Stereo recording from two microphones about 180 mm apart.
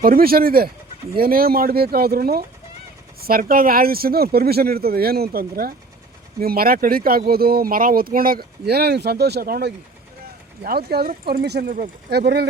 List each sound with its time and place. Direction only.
0.0 s speech: 55° right (ahead or behind)